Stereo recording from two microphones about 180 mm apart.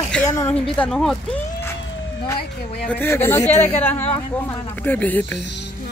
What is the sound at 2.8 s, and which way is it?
Speech, 10° left (ahead or behind).